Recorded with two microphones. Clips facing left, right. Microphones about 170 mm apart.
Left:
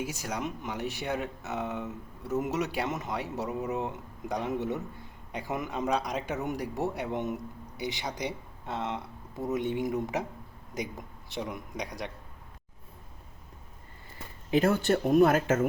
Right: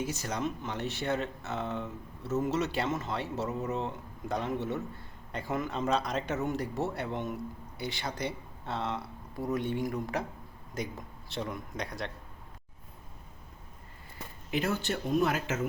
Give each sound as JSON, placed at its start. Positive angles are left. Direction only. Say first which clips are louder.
{"t": 0.0, "sound": "speech", "louder": "right 1 dB", "side_deg": 10}
{"t": 14.5, "sound": "speech", "louder": "left 7 dB", "side_deg": 50}